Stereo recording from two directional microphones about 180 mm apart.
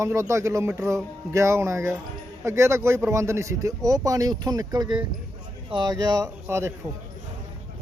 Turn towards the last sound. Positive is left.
turn(degrees=-15)  # may be behind; listen again after turning